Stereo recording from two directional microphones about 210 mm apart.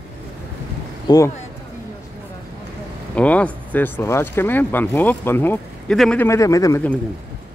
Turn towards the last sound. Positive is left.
turn(degrees=15)  # may be behind; listen again after turning